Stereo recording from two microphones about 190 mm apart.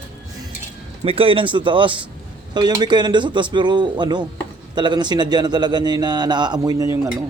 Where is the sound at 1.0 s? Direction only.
30° right (ahead or behind).